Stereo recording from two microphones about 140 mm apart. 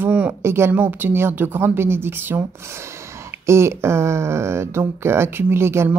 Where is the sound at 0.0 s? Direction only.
10° right (ahead or behind).